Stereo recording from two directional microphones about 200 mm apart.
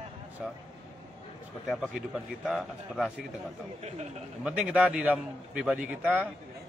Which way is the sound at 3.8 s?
35° right (ahead or behind).